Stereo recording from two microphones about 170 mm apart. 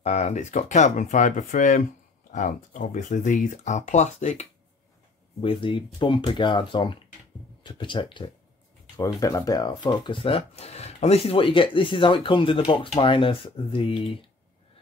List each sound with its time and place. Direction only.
0.0 s speech: 45° left (ahead or behind)
5.4 s speech: 30° left (ahead or behind)